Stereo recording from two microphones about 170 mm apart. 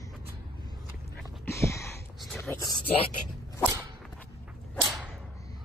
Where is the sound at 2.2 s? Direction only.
Centre (ahead or behind).